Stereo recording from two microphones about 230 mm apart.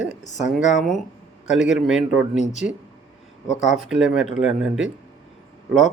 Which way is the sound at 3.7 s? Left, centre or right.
Centre.